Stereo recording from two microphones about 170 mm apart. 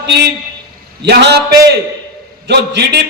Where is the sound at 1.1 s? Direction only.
80° right.